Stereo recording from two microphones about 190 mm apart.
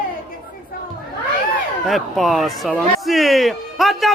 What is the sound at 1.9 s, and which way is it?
Speech, centre (ahead or behind).